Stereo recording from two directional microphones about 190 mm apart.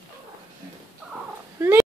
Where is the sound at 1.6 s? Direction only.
15° right (ahead or behind).